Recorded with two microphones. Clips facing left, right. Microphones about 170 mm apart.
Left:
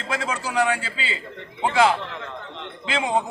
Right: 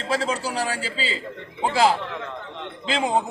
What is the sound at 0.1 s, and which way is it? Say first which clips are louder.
A man's voice: right 2 dB; 30° right (ahead or behind).